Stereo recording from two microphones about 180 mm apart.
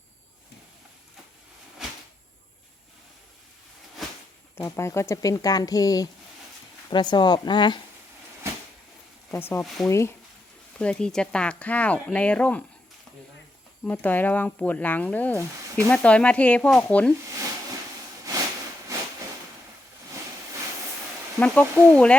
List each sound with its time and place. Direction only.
1.8 s a sound: centre (ahead or behind)
4.5 s speech: 15° left (ahead or behind)
9.3 s speech: 15° left (ahead or behind)
13.8 s speech: 10° left (ahead or behind)
21.3 s speech: 10° left (ahead or behind)